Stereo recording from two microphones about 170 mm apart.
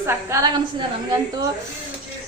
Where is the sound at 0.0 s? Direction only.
15° right (ahead or behind).